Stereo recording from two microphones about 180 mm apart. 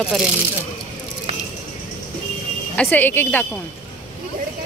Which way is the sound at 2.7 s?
10° left (ahead or behind).